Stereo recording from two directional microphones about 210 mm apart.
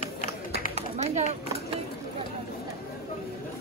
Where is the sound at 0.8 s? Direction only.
30° right (ahead or behind).